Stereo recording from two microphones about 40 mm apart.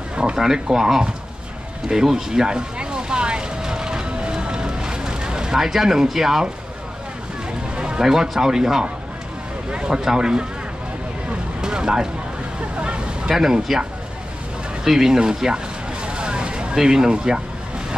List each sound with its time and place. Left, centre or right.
0.1 s a sound: right
0.4 s speech: centre
1.9 s vehicle: centre
5.6 s speech: centre
7.7 s a sound: right
8.0 s speech: centre
11.6 s vehicle: centre
12.7 s vehicle: right
13.3 s speech: centre
14.9 s a sound: centre
16.7 s speech: centre